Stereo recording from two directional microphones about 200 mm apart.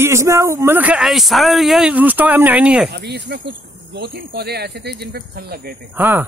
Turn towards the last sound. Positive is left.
turn(degrees=-10)  # may be behind; listen again after turning